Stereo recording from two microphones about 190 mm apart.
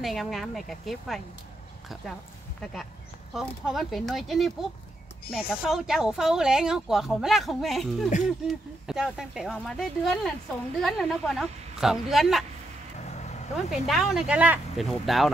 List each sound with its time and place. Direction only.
0.0 s speech: centre (ahead or behind)
2.6 s speech: centre (ahead or behind)
13.0 s vehicle: 35° left (ahead or behind)
13.7 s speech: centre (ahead or behind)